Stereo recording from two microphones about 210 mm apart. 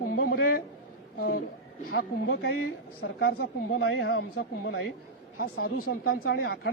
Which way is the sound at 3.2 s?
50° left (ahead or behind).